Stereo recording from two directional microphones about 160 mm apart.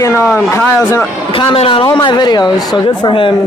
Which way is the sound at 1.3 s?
35° left (ahead or behind).